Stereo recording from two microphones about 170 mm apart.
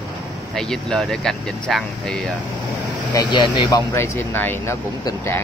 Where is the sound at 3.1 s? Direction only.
25° left (ahead or behind).